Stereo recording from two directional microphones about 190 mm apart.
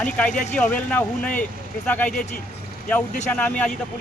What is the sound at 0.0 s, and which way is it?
Speech, 5° left (ahead or behind).